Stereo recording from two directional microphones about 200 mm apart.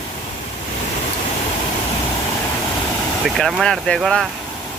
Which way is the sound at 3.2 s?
Centre (ahead or behind).